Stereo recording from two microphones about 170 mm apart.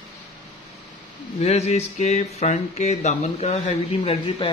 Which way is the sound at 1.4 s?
40° left (ahead or behind).